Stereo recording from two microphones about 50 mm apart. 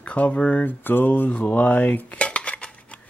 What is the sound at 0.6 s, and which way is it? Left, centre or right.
Cutlery, left.